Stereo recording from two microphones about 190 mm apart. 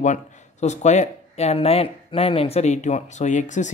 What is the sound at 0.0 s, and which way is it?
Speech, 40° left (ahead or behind).